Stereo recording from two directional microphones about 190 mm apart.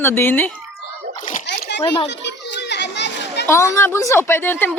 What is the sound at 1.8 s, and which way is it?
Speech, 25° left (ahead or behind).